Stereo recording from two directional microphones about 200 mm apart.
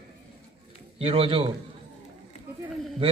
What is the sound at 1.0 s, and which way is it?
Speech, 30° right (ahead or behind).